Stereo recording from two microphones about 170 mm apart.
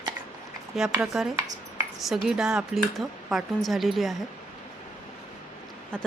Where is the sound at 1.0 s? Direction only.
Centre (ahead or behind).